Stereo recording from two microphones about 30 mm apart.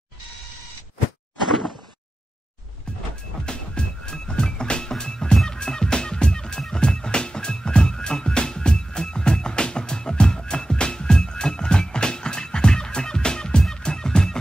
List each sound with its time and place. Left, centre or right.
3.4 s music: left